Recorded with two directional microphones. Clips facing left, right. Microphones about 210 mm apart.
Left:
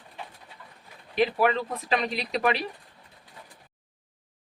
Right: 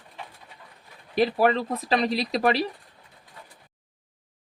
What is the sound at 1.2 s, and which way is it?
Speech, 35° right (ahead or behind).